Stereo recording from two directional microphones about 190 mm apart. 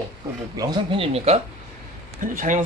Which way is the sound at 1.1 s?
35° right (ahead or behind).